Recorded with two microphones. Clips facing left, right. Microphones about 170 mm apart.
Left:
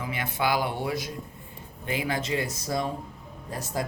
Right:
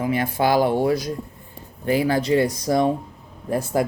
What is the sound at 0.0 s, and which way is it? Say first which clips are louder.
Speech: right 8 dB; 45° right (ahead or behind).